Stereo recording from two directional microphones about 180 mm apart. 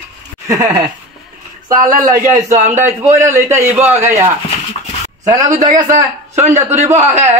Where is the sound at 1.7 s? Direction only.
45° right (ahead or behind).